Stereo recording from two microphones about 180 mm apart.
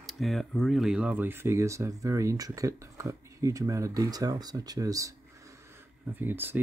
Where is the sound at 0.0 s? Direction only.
Centre (ahead or behind); by 5.1 s 20° right (ahead or behind).